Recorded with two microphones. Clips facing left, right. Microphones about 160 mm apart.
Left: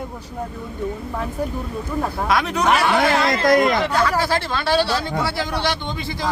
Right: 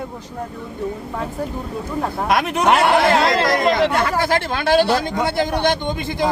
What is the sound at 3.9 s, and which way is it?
Speech, 50° right (ahead or behind).